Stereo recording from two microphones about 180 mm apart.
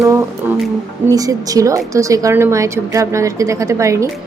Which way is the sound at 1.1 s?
20° right (ahead or behind).